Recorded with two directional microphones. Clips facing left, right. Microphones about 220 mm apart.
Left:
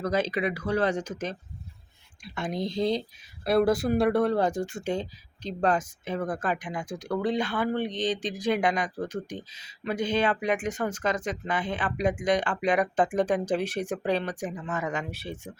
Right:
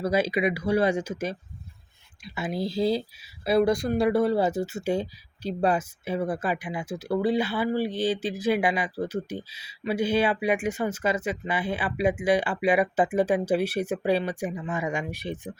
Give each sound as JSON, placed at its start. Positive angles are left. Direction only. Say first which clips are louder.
{"t": 0.0, "sound": "speech", "louder": "right 3 dB", "side_deg": -10}